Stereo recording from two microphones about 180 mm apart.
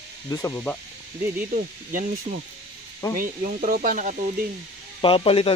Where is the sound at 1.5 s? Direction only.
45° right (ahead or behind).